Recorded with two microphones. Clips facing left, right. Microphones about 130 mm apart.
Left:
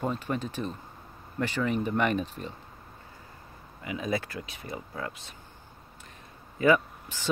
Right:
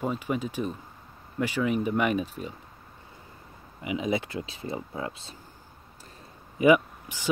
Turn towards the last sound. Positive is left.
turn(degrees=-15)  # may be behind; listen again after turning